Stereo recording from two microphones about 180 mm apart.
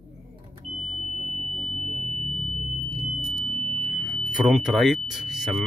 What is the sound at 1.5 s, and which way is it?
Smoke detector, centre (ahead or behind).